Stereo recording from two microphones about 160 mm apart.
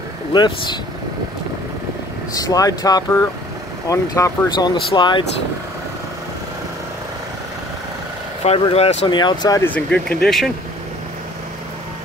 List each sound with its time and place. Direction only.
0.3 s speech: 30° left (ahead or behind)
2.3 s speech: 20° left (ahead or behind)
8.5 s speech: 40° left (ahead or behind)
9.6 s speech: 10° left (ahead or behind)